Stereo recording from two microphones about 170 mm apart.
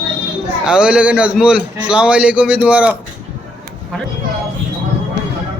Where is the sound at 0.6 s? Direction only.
5° right (ahead or behind).